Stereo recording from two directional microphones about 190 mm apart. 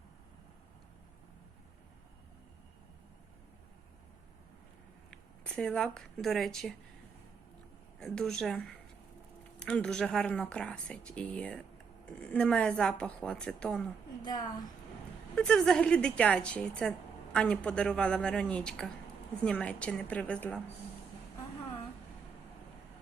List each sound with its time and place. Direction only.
5.1 s speech: 5° left (ahead or behind)
7.9 s a woman's voice: 5° left (ahead or behind)
14.2 s a woman's voice: 20° left (ahead or behind)
15.4 s a woman's voice: 5° left (ahead or behind)